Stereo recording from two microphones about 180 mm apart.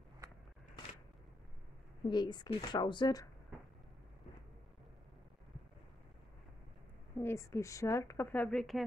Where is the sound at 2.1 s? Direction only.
25° left (ahead or behind).